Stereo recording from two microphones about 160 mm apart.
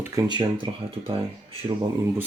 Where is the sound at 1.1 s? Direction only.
35° right (ahead or behind).